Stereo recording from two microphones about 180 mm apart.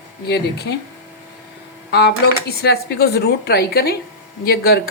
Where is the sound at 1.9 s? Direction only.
65° left (ahead or behind).